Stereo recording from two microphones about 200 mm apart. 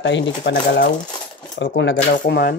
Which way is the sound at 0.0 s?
65° left (ahead or behind).